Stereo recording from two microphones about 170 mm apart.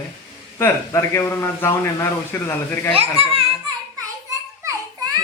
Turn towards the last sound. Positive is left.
turn(degrees=-20)  # may be behind; listen again after turning